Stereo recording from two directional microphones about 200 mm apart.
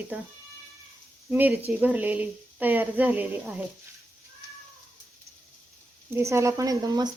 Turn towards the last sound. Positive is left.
turn(degrees=-20)  # may be behind; listen again after turning